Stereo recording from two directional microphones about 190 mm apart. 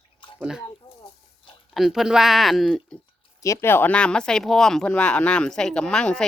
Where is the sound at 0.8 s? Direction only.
30° left (ahead or behind).